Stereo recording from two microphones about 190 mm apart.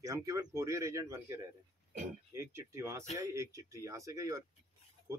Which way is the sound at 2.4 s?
15° right (ahead or behind).